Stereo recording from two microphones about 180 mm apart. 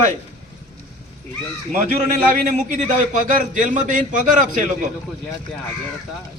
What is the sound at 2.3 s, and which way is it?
A man's voice, 45° right (ahead or behind).